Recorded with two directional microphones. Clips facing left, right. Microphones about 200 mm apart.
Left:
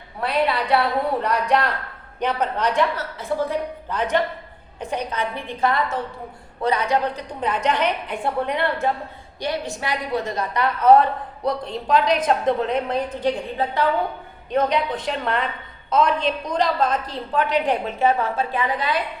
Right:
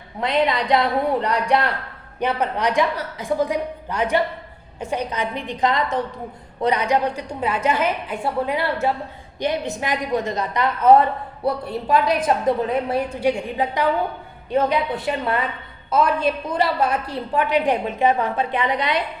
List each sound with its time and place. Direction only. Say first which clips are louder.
0.2 s a woman's voice: right 2 dB; 20° right (ahead or behind)
9.4 s a woman's voice: right 3 dB; 20° right (ahead or behind)